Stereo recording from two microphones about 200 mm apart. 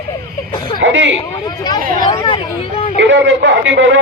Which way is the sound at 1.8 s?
45° right (ahead or behind).